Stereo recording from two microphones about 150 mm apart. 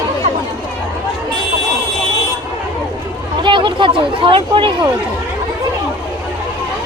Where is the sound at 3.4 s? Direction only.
35° right (ahead or behind).